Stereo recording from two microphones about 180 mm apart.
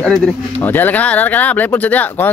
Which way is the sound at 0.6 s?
10° left (ahead or behind).